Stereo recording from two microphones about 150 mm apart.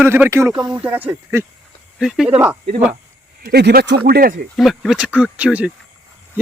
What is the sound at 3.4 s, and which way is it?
Speech, 90° right.